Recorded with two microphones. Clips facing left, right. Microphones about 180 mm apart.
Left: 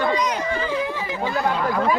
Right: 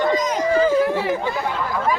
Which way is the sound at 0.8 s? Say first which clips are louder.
Right 7 dB; 80° right.